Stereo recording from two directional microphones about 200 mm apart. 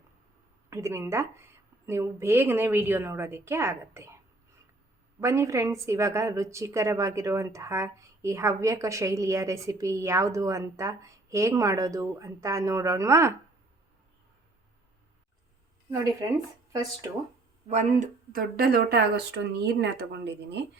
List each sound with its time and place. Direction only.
0.7 s speech: 15° right (ahead or behind)
5.2 s speech: 15° right (ahead or behind)
17.7 s speech: 35° right (ahead or behind); by 20.3 s 55° right (ahead or behind)